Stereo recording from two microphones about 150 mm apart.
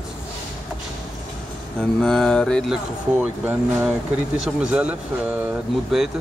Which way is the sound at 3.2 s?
15° right (ahead or behind).